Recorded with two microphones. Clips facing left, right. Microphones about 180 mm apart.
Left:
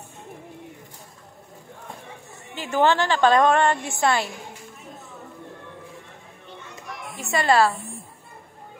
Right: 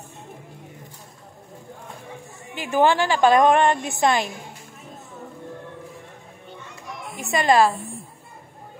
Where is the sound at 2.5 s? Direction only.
15° right (ahead or behind).